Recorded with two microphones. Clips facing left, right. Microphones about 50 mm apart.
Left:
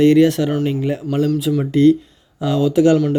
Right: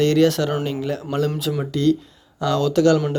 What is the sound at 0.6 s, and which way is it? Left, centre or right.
Speech, left.